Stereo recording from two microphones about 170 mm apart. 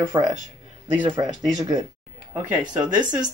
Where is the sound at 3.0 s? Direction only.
25° right (ahead or behind).